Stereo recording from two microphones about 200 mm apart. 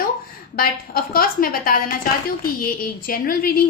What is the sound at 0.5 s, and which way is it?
A woman's voice, 45° left (ahead or behind).